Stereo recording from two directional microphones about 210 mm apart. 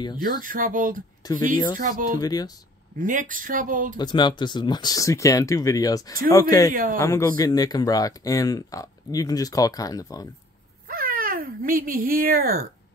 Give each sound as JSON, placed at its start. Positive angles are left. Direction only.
{"t": 0.4, "sound": "speech", "side_deg": -40}
{"t": 1.2, "sound": "speech", "side_deg": 20}
{"t": 1.8, "sound": "speech", "side_deg": -40}
{"t": 2.1, "sound": "speech", "side_deg": 20}
{"t": 3.0, "sound": "speech", "side_deg": -40}
{"t": 4.0, "sound": "speech", "side_deg": 20}
{"t": 6.7, "sound": "speech", "side_deg": -40}
{"t": 7.0, "sound": "speech", "side_deg": 15}
{"t": 10.9, "sound": "speech", "side_deg": -40}